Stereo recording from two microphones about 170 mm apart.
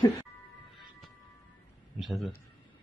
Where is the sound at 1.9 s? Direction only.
Centre (ahead or behind).